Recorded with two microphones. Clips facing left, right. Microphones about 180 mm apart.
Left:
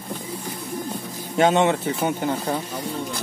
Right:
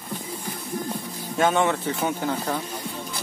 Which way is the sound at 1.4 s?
20° left (ahead or behind).